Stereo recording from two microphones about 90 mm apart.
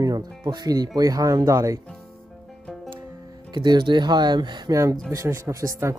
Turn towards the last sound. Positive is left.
turn(degrees=-35)  # may be behind; listen again after turning